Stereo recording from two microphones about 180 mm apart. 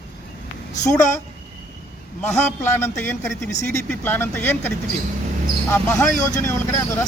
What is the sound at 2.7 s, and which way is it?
Speech, 10° left (ahead or behind).